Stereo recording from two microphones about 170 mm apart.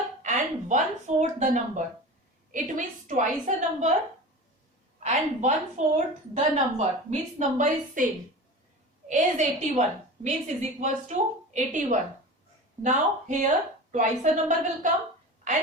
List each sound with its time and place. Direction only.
0.2 s a woman's voice: 45° right (ahead or behind)
5.0 s a woman's voice: 40° right (ahead or behind)
9.0 s a woman's voice: 45° right (ahead or behind)